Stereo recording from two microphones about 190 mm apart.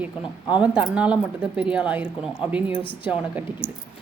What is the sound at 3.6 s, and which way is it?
Speech, 75° right (ahead or behind).